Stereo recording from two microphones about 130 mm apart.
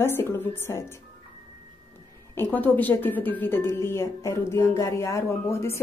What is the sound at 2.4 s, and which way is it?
Speech, 10° left (ahead or behind).